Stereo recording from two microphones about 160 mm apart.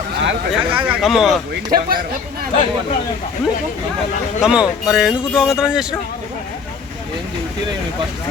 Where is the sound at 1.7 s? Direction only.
65° right (ahead or behind).